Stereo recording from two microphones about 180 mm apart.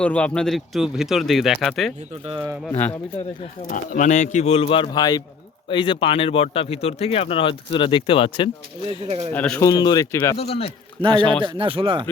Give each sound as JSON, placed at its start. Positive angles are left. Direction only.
{"t": 0.0, "sound": "a man's voice", "side_deg": 5}
{"t": 3.7, "sound": "speech", "side_deg": 50}
{"t": 8.9, "sound": "speech", "side_deg": -35}
{"t": 9.3, "sound": "a man's voice", "side_deg": 10}
{"t": 9.6, "sound": "speech", "side_deg": 20}
{"t": 10.3, "sound": "speech", "side_deg": 35}
{"t": 11.4, "sound": "speech", "side_deg": -30}